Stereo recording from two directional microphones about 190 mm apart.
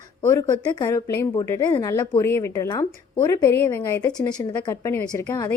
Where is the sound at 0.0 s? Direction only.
15° left (ahead or behind).